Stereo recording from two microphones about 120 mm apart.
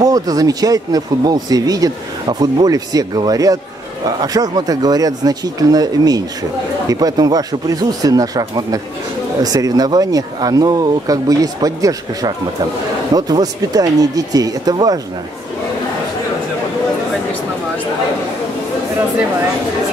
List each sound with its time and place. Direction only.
0.0 s speech: 30° right (ahead or behind)